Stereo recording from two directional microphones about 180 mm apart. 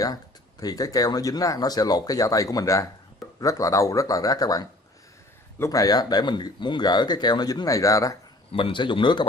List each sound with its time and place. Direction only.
0.0 s speech: 20° left (ahead or behind)
8.5 s speech: 30° left (ahead or behind)